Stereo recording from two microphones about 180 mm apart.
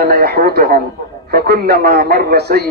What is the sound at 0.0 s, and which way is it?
A man's voice, 60° right (ahead or behind).